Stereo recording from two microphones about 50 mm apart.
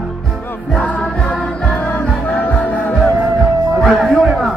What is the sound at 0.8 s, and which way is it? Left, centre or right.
Music, left.